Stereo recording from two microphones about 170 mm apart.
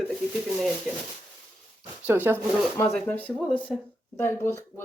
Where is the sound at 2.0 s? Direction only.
10° right (ahead or behind).